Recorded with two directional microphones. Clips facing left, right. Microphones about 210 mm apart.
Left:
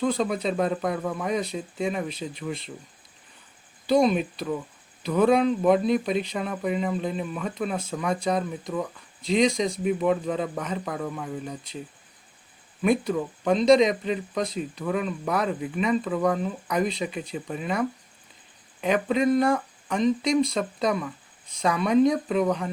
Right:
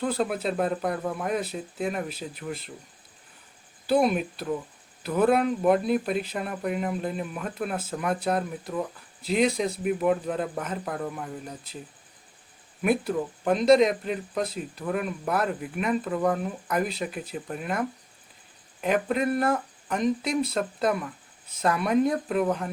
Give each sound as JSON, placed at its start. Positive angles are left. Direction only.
{"t": 0.0, "sound": "speech", "side_deg": -5}
{"t": 3.8, "sound": "speech", "side_deg": -5}
{"t": 12.8, "sound": "speech", "side_deg": -5}